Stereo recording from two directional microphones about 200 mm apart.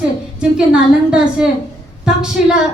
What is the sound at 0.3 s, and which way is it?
A woman's voice, 5° right (ahead or behind).